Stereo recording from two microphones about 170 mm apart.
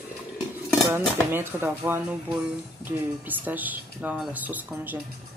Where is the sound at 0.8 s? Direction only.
15° right (ahead or behind).